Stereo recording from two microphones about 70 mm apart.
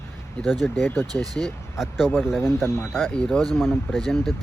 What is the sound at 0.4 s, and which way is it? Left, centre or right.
Speech, centre.